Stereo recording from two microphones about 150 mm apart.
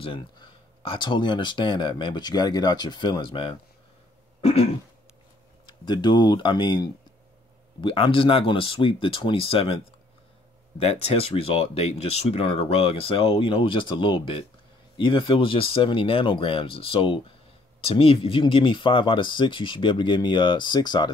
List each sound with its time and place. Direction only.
0.0 s speech: 35° left (ahead or behind)
4.4 s throat clearing: 40° left (ahead or behind)
5.9 s speech: 30° left (ahead or behind)
7.8 s speech: 35° left (ahead or behind)
10.8 s speech: 40° left (ahead or behind)